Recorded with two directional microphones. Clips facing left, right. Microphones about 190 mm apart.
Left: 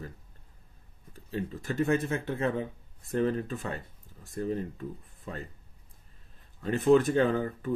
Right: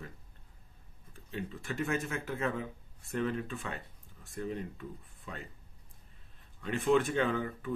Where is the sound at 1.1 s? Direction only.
40° left (ahead or behind).